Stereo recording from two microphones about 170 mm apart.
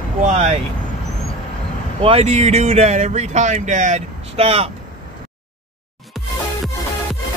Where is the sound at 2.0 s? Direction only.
35° right (ahead or behind).